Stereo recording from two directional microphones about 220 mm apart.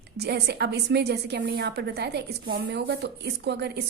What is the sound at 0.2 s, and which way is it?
A woman's voice, 50° right (ahead or behind).